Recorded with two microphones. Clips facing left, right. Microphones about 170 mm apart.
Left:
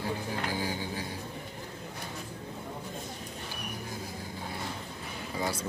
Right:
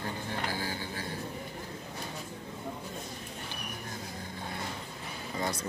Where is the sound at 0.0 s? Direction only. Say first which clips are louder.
Left 2 dB; 15° left (ahead or behind).